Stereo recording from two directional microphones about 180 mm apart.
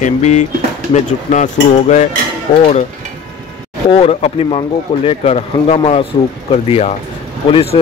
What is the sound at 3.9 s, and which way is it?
Speech, 35° left (ahead or behind).